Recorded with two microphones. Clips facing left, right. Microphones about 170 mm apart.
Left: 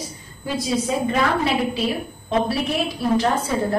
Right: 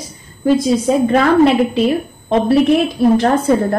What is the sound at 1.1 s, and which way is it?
Speech, 55° right (ahead or behind).